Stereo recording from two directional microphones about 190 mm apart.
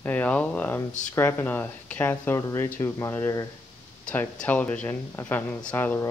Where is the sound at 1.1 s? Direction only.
10° left (ahead or behind).